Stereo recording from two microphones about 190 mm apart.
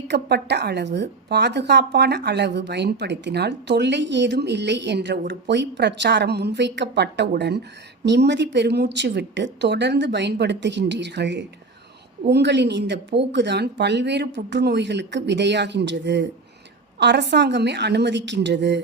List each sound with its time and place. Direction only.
0.1 s a woman's voice: 60° right (ahead or behind)